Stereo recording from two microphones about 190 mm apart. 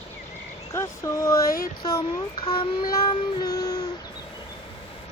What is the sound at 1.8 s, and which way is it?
Child singing, 20° left (ahead or behind).